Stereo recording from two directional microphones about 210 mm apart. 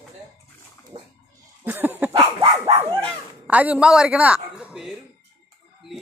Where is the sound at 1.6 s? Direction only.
10° right (ahead or behind).